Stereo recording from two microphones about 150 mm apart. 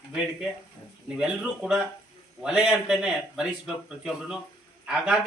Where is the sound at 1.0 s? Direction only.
5° right (ahead or behind).